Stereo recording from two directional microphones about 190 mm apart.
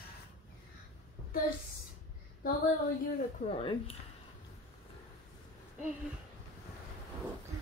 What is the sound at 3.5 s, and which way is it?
Speech, 30° left (ahead or behind).